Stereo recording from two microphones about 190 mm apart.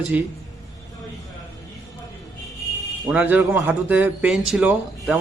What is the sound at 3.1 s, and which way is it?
A man's voice, 10° right (ahead or behind).